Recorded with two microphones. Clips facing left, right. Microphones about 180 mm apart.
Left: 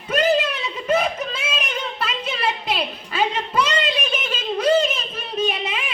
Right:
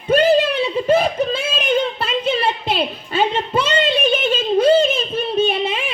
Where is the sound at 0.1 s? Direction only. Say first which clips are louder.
Right 5 dB; 30° right (ahead or behind).